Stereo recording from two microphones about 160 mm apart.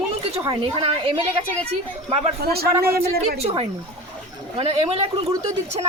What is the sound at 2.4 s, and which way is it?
Speech, 75° right (ahead or behind).